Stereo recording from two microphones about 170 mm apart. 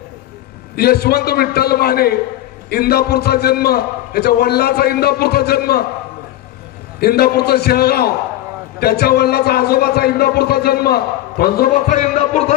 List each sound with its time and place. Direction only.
0.8 s a man's voice: 70° left (ahead or behind)
7.0 s a man's voice: 65° left (ahead or behind)
11.9 s a sound: 40° left (ahead or behind)